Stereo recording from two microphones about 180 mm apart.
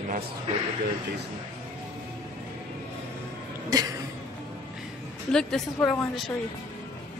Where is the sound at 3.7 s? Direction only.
20° right (ahead or behind).